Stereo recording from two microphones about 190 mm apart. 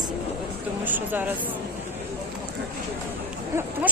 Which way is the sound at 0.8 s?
10° right (ahead or behind).